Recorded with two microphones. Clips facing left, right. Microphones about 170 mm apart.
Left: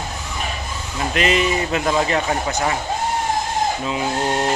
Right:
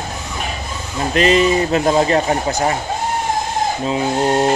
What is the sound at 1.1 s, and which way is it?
Speech, 35° right (ahead or behind).